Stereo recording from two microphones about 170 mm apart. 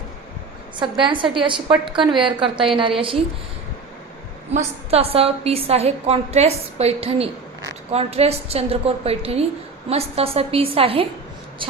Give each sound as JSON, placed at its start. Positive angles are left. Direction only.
{"t": 0.8, "sound": "a woman's voice", "side_deg": -30}
{"t": 4.5, "sound": "a woman's voice", "side_deg": -35}